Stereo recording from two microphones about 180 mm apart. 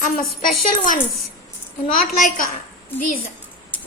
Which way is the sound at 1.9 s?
45° left (ahead or behind).